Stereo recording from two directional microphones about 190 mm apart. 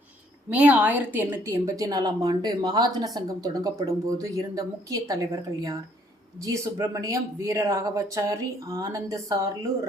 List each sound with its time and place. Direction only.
0.5 s a woman's voice: 5° right (ahead or behind)